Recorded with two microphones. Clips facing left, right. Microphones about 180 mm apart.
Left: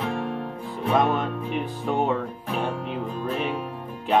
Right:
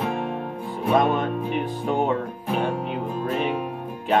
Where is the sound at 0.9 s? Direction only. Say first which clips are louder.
Right 2 dB; centre (ahead or behind).